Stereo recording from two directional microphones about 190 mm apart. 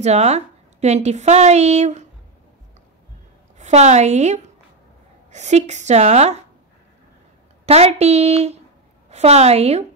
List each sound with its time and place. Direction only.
0.0 s a woman's voice: 35° right (ahead or behind)
3.5 s a woman's voice: 35° right (ahead or behind)
7.6 s a woman's voice: 35° right (ahead or behind)